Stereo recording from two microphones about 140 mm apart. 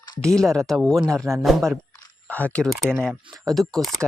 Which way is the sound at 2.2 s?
10° left (ahead or behind).